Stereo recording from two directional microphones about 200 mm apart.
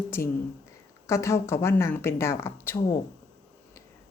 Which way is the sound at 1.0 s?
15° left (ahead or behind).